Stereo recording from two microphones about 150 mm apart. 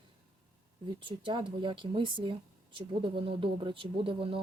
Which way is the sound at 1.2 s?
30° right (ahead or behind).